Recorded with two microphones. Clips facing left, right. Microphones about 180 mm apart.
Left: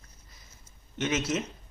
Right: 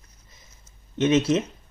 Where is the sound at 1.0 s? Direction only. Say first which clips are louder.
Right 9 dB; 25° right (ahead or behind).